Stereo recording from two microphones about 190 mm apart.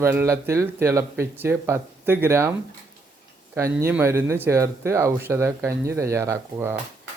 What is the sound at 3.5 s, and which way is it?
Speech, 15° right (ahead or behind).